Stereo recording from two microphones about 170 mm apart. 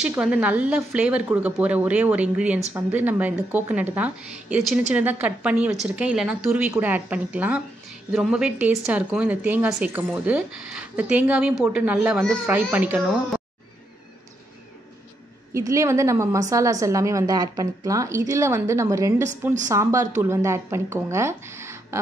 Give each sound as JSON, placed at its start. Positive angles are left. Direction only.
{"t": 0.1, "sound": "speech", "side_deg": -5}
{"t": 15.5, "sound": "a woman's voice", "side_deg": -15}